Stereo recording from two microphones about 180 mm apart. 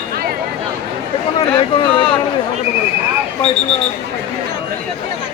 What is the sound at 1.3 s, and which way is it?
Speech, 30° left (ahead or behind).